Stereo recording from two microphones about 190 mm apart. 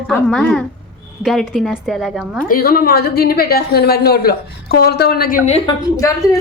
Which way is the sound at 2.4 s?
50° left (ahead or behind).